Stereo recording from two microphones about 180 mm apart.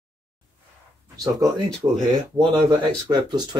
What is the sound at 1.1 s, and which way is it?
Speech, 20° right (ahead or behind).